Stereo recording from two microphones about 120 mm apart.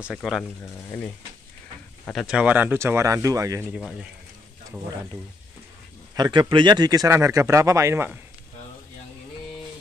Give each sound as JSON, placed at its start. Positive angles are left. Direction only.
{"t": 0.0, "sound": "speech", "side_deg": 0}
{"t": 2.1, "sound": "speech", "side_deg": -5}
{"t": 3.7, "sound": "speech", "side_deg": -5}
{"t": 6.1, "sound": "speech", "side_deg": -35}